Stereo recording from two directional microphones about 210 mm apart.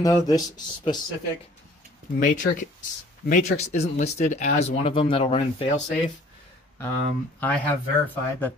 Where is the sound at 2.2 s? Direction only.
35° left (ahead or behind).